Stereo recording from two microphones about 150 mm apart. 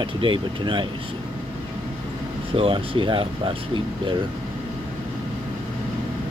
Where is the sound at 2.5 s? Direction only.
35° right (ahead or behind).